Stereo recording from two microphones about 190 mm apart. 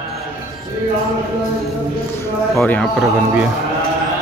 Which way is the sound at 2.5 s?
5° left (ahead or behind).